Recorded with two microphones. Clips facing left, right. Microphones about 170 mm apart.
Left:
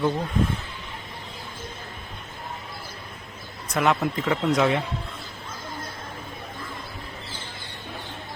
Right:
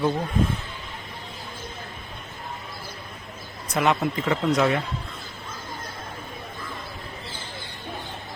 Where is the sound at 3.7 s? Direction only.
Centre (ahead or behind).